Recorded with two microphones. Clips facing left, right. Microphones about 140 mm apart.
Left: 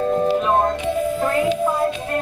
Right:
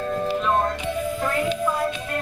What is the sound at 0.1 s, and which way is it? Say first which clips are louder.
Music: left 3 dB; 25° left (ahead or behind).